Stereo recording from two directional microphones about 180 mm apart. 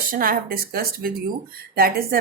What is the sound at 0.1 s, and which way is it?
A woman's voice, 55° right (ahead or behind).